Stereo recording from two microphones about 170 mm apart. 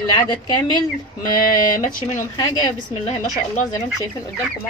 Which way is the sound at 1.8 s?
50° left (ahead or behind).